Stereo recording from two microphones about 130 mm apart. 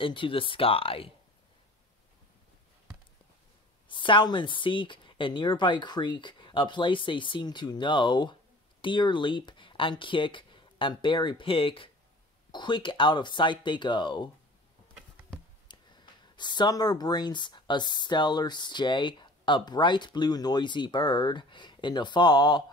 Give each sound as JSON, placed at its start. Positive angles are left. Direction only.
{"t": 0.0, "sound": "speech", "side_deg": 40}
{"t": 3.9, "sound": "speech", "side_deg": 40}
{"t": 15.7, "sound": "a sound", "side_deg": 35}
{"t": 16.3, "sound": "speech", "side_deg": 35}